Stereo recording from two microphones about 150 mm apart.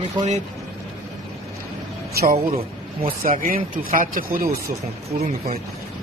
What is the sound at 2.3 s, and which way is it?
Speech, 40° right (ahead or behind).